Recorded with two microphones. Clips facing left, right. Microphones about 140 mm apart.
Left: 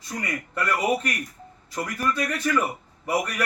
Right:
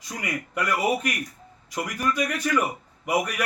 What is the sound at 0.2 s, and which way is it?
Speech, 10° right (ahead or behind).